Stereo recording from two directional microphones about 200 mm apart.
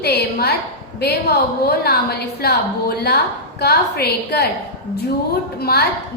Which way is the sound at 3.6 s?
50° left (ahead or behind).